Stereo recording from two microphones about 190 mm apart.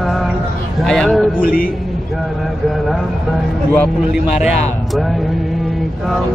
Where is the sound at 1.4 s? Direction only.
50° left (ahead or behind).